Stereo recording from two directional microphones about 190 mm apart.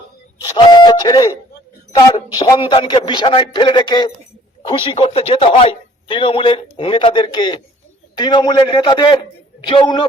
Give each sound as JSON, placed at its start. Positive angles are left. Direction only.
{"t": 0.5, "sound": "a man's voice", "side_deg": 25}